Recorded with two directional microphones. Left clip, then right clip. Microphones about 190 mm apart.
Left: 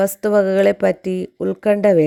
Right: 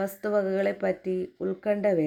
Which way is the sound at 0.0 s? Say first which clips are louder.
Left 11 dB; 40° left (ahead or behind).